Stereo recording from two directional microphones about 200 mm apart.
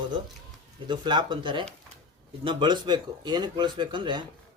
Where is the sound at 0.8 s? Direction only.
20° right (ahead or behind).